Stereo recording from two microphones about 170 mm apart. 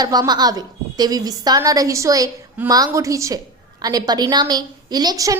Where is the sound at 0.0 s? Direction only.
25° right (ahead or behind).